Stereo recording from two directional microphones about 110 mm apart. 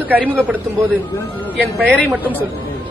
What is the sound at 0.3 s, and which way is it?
Speech, 15° right (ahead or behind).